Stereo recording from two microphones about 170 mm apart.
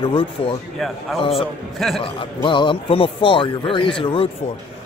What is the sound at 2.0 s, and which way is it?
A man's voice, 30° left (ahead or behind).